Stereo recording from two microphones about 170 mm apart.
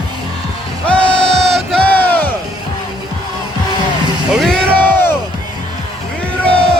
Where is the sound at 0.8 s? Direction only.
5° left (ahead or behind).